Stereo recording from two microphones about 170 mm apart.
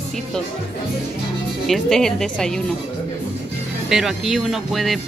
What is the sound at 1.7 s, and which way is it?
Speech, 5° left (ahead or behind).